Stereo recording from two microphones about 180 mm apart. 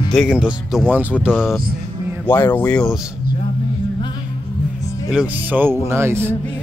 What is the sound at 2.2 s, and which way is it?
Speech, 10° left (ahead or behind).